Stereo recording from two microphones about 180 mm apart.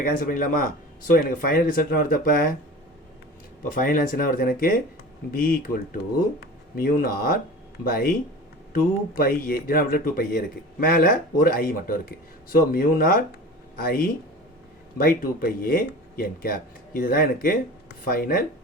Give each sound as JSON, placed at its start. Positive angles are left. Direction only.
{"t": 0.2, "sound": "speech", "side_deg": 50}
{"t": 3.6, "sound": "speech", "side_deg": 50}